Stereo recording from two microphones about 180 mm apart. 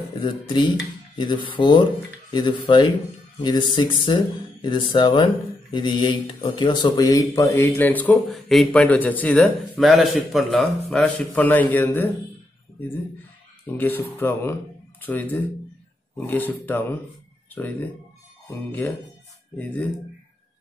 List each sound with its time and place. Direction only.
0.2 s speech: 25° left (ahead or behind)
13.7 s speech: 10° left (ahead or behind)